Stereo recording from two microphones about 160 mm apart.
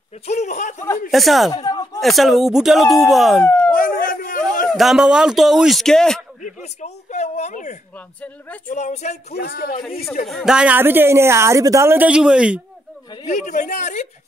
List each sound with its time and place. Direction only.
0.3 s speech: 45° left (ahead or behind)
1.1 s speech: centre (ahead or behind)
1.5 s a sound: 25° left (ahead or behind)
2.0 s speech: centre (ahead or behind)
3.7 s a sound: 60° left (ahead or behind)
4.7 s speech: centre (ahead or behind)
6.4 s a sound: 45° left (ahead or behind)
8.6 s speech: 45° left (ahead or behind)
9.3 s a man's voice: 80° left
10.2 s speech: centre (ahead or behind)
13.3 s speech: 50° left (ahead or behind)